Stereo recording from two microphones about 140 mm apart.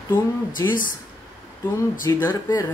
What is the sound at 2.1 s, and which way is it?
Speech, 25° left (ahead or behind).